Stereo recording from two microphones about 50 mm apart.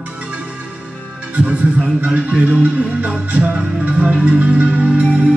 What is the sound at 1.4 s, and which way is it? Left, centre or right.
Music, right.